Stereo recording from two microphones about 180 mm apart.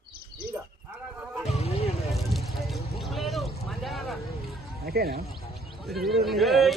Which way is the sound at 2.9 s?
Centre (ahead or behind).